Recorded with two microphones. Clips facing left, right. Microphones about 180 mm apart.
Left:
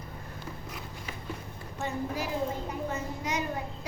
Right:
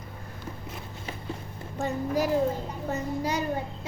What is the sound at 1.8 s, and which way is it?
A child's voice, 40° right (ahead or behind).